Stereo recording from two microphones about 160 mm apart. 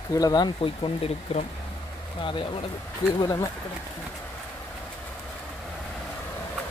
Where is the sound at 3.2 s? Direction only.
20° left (ahead or behind).